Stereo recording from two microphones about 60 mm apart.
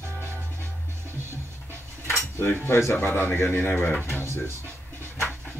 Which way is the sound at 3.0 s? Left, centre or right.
Left.